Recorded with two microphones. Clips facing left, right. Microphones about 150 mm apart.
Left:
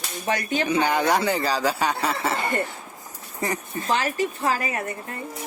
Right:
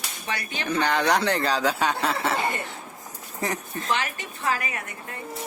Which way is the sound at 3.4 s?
Centre (ahead or behind).